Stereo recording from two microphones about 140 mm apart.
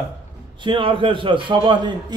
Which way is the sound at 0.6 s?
35° right (ahead or behind).